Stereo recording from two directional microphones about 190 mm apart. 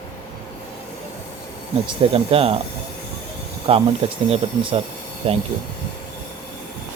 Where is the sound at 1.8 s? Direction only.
30° right (ahead or behind).